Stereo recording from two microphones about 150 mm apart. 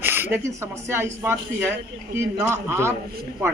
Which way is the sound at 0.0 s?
15° right (ahead or behind).